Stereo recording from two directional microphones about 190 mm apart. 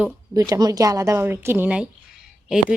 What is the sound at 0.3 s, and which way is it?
A woman's voice, 20° right (ahead or behind).